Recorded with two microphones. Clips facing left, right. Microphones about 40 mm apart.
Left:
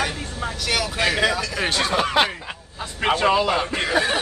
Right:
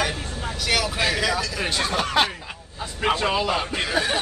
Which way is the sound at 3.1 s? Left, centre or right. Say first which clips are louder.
Left 6 dB; left.